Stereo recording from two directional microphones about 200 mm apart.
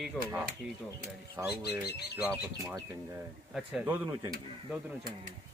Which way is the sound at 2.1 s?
10° right (ahead or behind).